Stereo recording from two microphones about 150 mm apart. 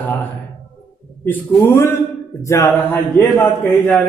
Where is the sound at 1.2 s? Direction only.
15° left (ahead or behind).